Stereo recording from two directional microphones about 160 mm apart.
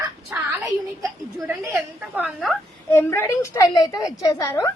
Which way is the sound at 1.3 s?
10° right (ahead or behind).